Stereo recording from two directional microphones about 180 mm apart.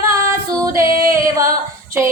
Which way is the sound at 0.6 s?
15° right (ahead or behind).